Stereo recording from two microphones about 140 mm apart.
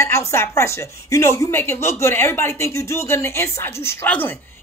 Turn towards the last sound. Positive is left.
turn(degrees=10)  # may be behind; listen again after turning